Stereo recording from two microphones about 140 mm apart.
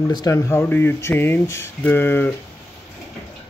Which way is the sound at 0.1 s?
25° left (ahead or behind).